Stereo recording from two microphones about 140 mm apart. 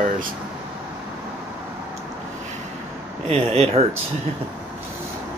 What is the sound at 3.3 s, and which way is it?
Speech, 45° right (ahead or behind).